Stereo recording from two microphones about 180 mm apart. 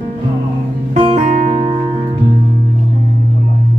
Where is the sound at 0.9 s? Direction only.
40° right (ahead or behind).